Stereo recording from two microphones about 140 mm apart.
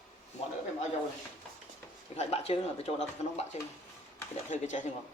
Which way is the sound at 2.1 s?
50° left (ahead or behind).